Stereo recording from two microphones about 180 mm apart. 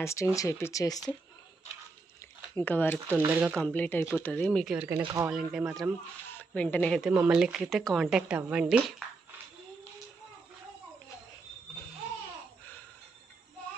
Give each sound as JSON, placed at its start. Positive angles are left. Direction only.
{"t": 0.0, "sound": "speech", "side_deg": 15}
{"t": 2.5, "sound": "speech", "side_deg": 10}
{"t": 3.2, "sound": "speech", "side_deg": -15}
{"t": 3.5, "sound": "speech", "side_deg": 5}
{"t": 4.7, "sound": "speech", "side_deg": -15}
{"t": 5.3, "sound": "speech", "side_deg": -5}
{"t": 6.3, "sound": "speech", "side_deg": 10}